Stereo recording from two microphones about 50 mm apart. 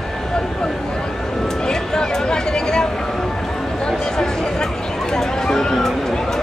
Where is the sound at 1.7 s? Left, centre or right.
Centre.